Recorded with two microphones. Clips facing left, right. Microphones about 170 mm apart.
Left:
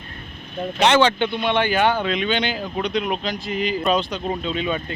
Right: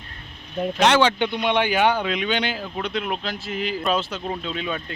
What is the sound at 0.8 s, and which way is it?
Speech, 5° right (ahead or behind).